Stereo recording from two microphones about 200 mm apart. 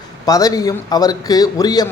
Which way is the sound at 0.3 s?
20° left (ahead or behind).